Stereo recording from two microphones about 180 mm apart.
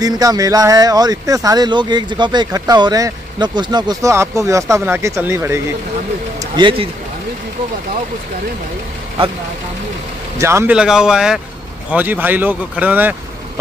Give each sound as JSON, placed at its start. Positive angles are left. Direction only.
{"t": 0.0, "sound": "speech", "side_deg": -20}
{"t": 6.5, "sound": "speech", "side_deg": -30}
{"t": 10.4, "sound": "speech", "side_deg": -15}